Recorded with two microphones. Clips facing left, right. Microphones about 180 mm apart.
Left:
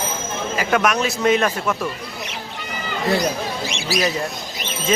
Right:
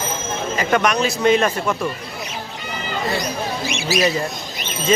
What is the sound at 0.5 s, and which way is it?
Speech, 5° left (ahead or behind).